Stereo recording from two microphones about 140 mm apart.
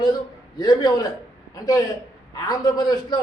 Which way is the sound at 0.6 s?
30° left (ahead or behind).